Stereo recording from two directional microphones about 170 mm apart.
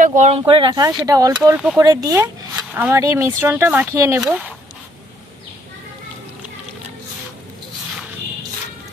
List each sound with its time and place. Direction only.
0.0 s speech: 45° right (ahead or behind)
0.4 s speech: 30° right (ahead or behind); by 4.6 s 10° right (ahead or behind)